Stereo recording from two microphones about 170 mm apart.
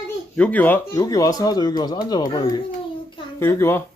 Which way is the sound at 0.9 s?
20° left (ahead or behind).